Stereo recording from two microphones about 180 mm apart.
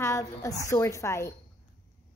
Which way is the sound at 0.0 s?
15° left (ahead or behind).